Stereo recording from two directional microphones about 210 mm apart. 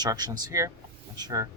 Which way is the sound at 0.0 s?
20° right (ahead or behind).